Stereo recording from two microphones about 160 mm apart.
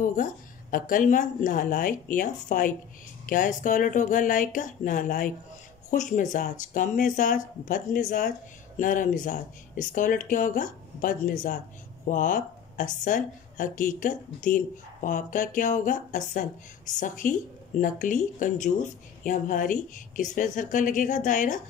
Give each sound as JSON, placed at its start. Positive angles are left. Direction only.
{"t": 0.0, "sound": "speech", "side_deg": 60}